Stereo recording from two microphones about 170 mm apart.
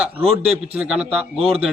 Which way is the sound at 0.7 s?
5° right (ahead or behind).